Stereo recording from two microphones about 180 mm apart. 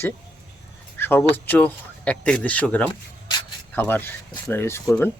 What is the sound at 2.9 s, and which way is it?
Rub, 25° left (ahead or behind).